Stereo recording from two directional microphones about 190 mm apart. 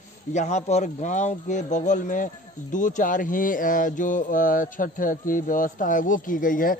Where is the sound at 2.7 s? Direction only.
45° left (ahead or behind).